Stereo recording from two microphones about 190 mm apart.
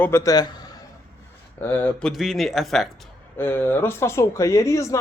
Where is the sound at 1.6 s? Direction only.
10° left (ahead or behind).